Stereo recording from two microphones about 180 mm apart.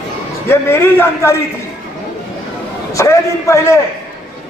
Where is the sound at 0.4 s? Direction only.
15° left (ahead or behind).